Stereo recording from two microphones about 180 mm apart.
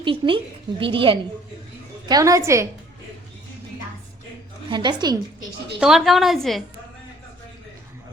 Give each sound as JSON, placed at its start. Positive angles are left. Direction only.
{"t": 0.0, "sound": "a woman's voice", "side_deg": -30}
{"t": 4.7, "sound": "a woman's voice", "side_deg": -25}
{"t": 5.8, "sound": "a woman's voice", "side_deg": 0}